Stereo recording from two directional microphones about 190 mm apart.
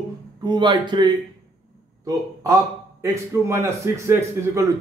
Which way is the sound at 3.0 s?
15° right (ahead or behind).